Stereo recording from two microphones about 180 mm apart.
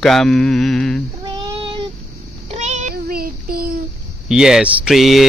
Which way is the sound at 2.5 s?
40° right (ahead or behind).